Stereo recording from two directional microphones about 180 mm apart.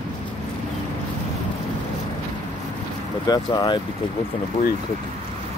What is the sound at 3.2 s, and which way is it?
Speech, 25° left (ahead or behind).